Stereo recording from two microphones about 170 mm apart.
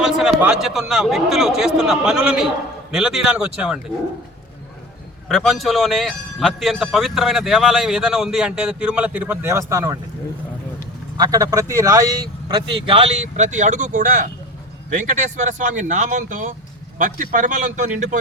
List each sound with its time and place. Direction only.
0.0 s speech: centre (ahead or behind)
5.3 s speech: centre (ahead or behind); by 10.0 s 15° right (ahead or behind)
11.2 s speech: 20° right (ahead or behind); by 17.7 s 50° right (ahead or behind)